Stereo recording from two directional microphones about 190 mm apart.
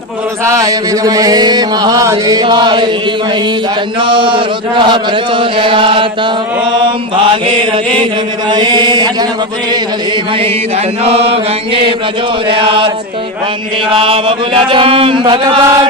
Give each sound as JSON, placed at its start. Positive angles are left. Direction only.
{"t": 0.5, "sound": "chant", "side_deg": -20}
{"t": 4.0, "sound": "chant", "side_deg": -25}
{"t": 8.5, "sound": "chant", "side_deg": -25}
{"t": 11.1, "sound": "chant", "side_deg": -30}